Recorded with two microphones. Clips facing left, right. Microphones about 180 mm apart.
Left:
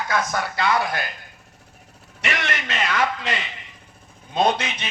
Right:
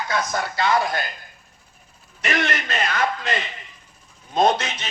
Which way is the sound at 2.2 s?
40° right (ahead or behind).